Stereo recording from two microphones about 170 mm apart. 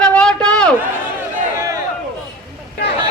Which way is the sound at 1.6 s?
20° right (ahead or behind).